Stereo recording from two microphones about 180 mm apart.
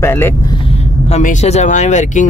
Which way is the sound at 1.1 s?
40° left (ahead or behind).